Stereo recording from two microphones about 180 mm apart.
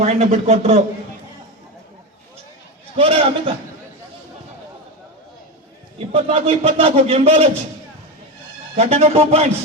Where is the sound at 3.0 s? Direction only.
30° right (ahead or behind).